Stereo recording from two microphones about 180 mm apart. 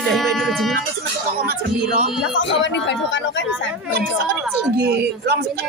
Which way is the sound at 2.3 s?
85° left.